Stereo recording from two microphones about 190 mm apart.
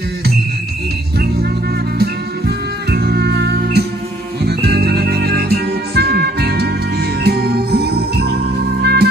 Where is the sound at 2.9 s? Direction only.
60° right (ahead or behind).